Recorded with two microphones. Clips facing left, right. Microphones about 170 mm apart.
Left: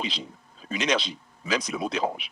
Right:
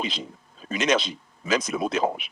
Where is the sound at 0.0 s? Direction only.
50° right (ahead or behind).